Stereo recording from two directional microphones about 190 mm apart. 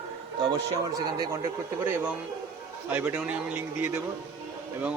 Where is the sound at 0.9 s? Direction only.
20° right (ahead or behind).